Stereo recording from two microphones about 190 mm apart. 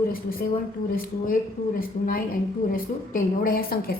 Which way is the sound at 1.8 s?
50° left (ahead or behind).